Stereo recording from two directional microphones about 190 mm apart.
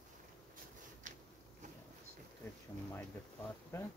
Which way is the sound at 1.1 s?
40° right (ahead or behind).